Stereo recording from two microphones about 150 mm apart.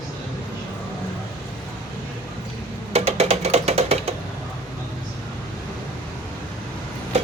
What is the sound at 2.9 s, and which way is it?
Music, 45° right (ahead or behind).